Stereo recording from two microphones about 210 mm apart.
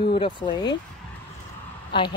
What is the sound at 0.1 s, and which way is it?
Speech, 20° left (ahead or behind).